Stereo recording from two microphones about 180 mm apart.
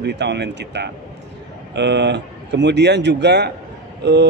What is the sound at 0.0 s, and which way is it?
A man's voice, 70° right (ahead or behind).